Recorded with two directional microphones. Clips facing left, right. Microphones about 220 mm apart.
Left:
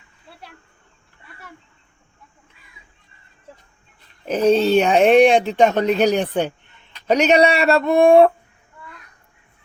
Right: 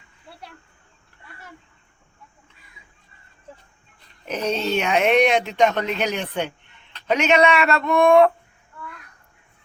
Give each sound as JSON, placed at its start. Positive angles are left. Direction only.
{"t": 4.3, "sound": "speech", "side_deg": 30}